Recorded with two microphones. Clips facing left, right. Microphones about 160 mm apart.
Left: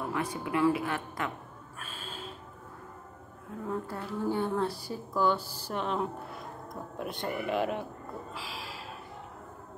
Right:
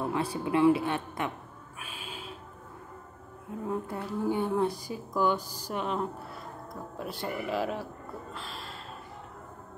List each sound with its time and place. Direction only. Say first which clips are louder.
0.0 s a woman's voice: right 3 dB; 30° right (ahead or behind)
1.8 s a sound: even; 10° right (ahead or behind)
3.6 s a woman's voice: right 2 dB; 20° right (ahead or behind)
5.7 s speech: even; 5° right (ahead or behind)